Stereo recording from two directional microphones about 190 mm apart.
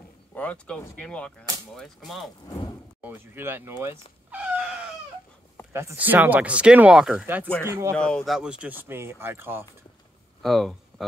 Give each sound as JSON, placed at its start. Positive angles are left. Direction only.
{"t": 0.3, "sound": "speech", "side_deg": 5}
{"t": 2.4, "sound": "speech", "side_deg": 20}
{"t": 3.0, "sound": "speech", "side_deg": -10}
{"t": 7.9, "sound": "speech", "side_deg": 5}
{"t": 10.4, "sound": "speech", "side_deg": 0}